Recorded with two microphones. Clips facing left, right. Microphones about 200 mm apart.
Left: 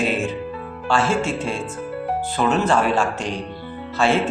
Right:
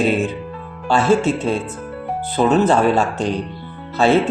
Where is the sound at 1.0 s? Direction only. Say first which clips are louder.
Right 6 dB; 40° right (ahead or behind).